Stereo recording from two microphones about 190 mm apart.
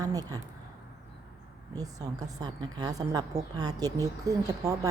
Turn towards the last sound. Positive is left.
turn(degrees=-15)  # may be behind; listen again after turning